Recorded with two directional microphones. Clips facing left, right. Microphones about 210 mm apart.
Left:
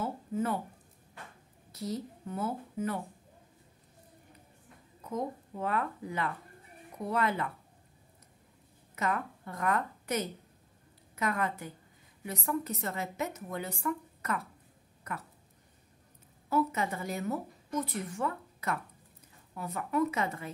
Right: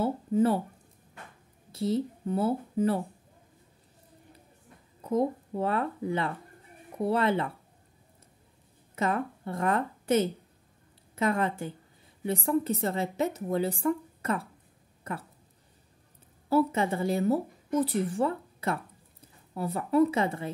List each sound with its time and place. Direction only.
0.0 s speech: 30° right (ahead or behind)
1.7 s speech: 30° right (ahead or behind)
5.0 s speech: 30° right (ahead or behind)
8.9 s a woman's voice: 30° right (ahead or behind)
16.4 s a woman's voice: 30° right (ahead or behind)